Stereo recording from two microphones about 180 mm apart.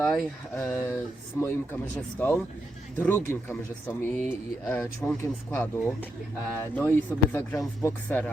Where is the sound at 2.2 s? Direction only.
10° left (ahead or behind).